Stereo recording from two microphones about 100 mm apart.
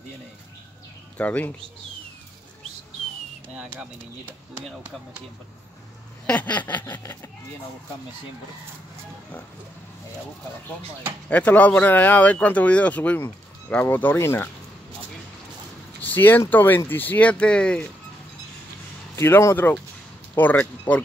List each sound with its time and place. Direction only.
1.1 s speech: 15° left (ahead or behind)
6.2 s speech: 15° left (ahead or behind)
11.2 s speech: 15° left (ahead or behind)
16.0 s speech: 20° left (ahead or behind)
19.1 s speech: 30° left (ahead or behind)